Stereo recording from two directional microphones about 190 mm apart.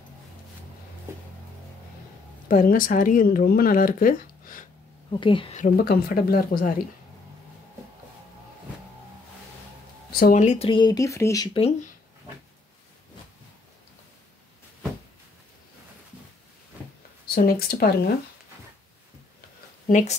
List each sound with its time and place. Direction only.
2.4 s speech: 45° left (ahead or behind)
5.2 s speech: 25° left (ahead or behind)
5.6 s speech: 55° left (ahead or behind)
10.1 s speech: 45° left (ahead or behind); by 11.7 s 25° left (ahead or behind)
17.3 s speech: 50° left (ahead or behind)
19.9 s speech: 40° left (ahead or behind)